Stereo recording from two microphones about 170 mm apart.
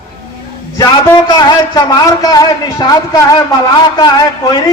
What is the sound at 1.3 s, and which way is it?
A man's voice, 25° left (ahead or behind).